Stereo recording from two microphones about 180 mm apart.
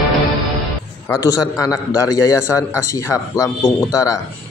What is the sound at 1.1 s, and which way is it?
A man's voice, 20° left (ahead or behind).